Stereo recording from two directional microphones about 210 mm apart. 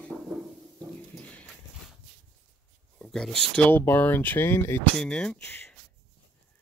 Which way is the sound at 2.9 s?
5° left (ahead or behind).